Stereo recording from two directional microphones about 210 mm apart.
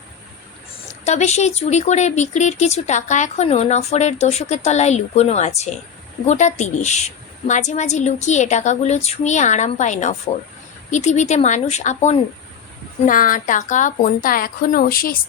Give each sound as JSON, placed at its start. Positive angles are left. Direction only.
{"t": 1.0, "sound": "speech", "side_deg": 35}